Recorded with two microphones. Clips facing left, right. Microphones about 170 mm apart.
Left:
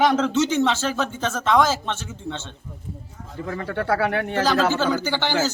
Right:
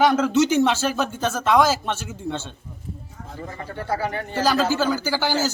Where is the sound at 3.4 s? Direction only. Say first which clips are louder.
Left 5 dB; 70° left (ahead or behind).